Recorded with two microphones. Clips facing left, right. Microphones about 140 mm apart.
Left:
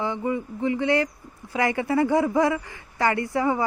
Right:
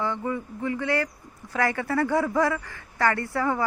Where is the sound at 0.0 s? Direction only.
15° left (ahead or behind).